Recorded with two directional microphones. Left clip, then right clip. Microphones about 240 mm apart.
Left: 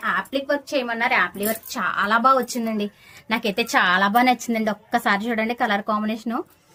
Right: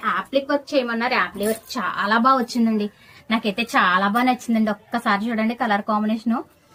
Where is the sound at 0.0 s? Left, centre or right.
Left.